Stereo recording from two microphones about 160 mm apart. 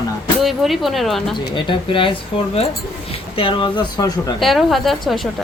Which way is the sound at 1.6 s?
30° left (ahead or behind).